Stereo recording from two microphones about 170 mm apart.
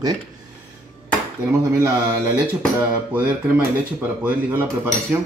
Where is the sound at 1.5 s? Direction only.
15° right (ahead or behind).